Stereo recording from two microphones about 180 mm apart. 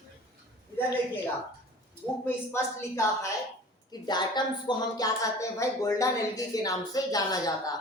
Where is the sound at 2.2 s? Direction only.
15° left (ahead or behind).